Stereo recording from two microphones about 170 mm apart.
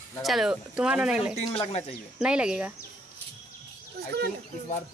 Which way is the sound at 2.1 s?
5° right (ahead or behind).